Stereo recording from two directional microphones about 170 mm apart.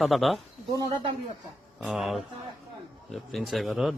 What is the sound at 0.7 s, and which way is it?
Speech, 20° right (ahead or behind).